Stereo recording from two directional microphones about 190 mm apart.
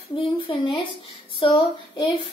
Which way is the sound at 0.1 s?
25° left (ahead or behind).